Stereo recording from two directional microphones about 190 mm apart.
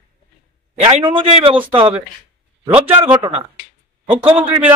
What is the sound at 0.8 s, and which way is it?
Speech, 30° right (ahead or behind).